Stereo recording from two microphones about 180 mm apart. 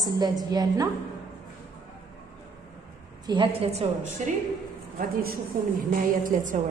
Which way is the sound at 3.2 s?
30° right (ahead or behind).